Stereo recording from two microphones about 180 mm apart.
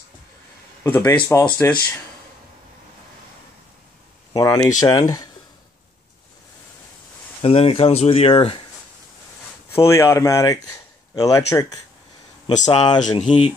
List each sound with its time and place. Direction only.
0.8 s speech: 10° left (ahead or behind)
1.3 s speech: 20° left (ahead or behind)
4.3 s speech: 20° left (ahead or behind)
7.4 s speech: 35° left (ahead or behind)
9.8 s speech: 15° left (ahead or behind); by 13.5 s 30° left (ahead or behind)